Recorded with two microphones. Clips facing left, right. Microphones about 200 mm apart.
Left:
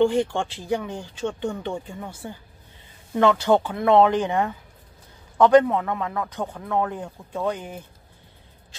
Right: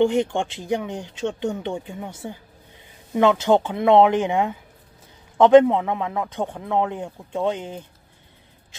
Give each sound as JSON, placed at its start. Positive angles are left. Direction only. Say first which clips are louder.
{"t": 0.0, "sound": "a man's voice", "louder": "right 1 dB", "side_deg": -20}